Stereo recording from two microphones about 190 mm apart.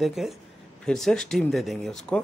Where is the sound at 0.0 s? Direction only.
Centre (ahead or behind).